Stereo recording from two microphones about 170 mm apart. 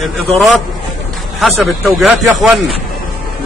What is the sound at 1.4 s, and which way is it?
Speech, centre (ahead or behind).